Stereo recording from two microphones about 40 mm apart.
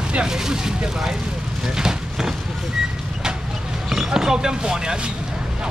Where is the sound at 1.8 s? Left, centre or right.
Centre.